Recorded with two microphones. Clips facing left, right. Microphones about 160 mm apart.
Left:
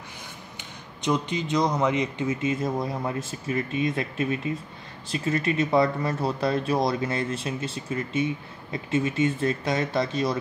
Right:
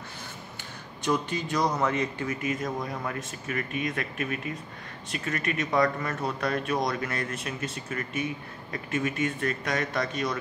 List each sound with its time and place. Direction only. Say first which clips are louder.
1.0 s a man's voice: left 2 dB; 20° left (ahead or behind)